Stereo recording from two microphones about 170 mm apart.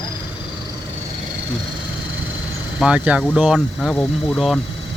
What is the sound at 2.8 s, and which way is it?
Speech, 5° right (ahead or behind).